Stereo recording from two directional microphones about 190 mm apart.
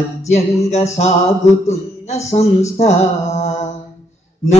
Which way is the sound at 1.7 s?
35° left (ahead or behind).